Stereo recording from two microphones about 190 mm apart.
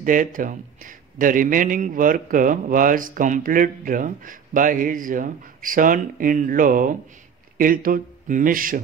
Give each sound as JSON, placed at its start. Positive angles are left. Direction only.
{"t": 0.0, "sound": "a man's voice", "side_deg": -45}